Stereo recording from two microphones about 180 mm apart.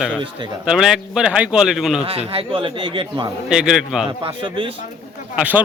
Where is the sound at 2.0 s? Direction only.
30° right (ahead or behind).